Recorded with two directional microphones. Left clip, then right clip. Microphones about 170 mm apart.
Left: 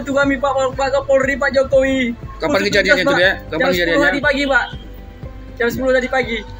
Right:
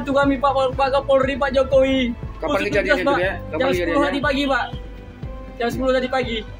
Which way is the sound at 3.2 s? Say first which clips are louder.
Left 8 dB; 50° left (ahead or behind).